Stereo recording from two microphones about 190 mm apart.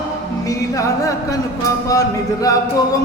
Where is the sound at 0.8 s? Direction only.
15° left (ahead or behind).